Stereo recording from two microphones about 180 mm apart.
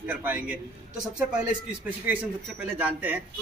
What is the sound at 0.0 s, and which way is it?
Speech, 10° right (ahead or behind).